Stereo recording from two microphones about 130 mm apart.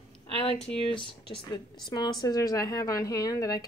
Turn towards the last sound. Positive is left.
turn(degrees=30)  # may be behind; listen again after turning